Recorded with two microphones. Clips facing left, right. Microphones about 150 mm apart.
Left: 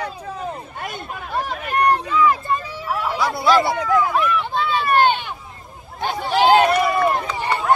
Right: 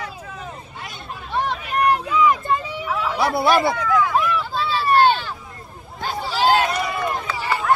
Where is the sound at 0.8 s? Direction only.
55° left (ahead or behind).